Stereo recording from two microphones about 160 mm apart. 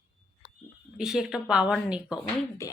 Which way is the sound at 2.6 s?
20° left (ahead or behind).